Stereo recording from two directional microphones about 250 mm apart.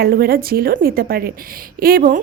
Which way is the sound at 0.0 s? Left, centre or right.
Right.